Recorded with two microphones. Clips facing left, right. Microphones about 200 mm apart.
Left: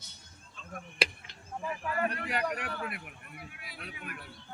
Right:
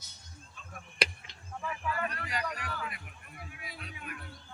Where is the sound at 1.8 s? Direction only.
55° left (ahead or behind).